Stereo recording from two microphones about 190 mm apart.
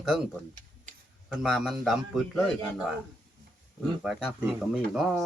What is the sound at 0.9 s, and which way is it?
Tick-tock, 45° right (ahead or behind).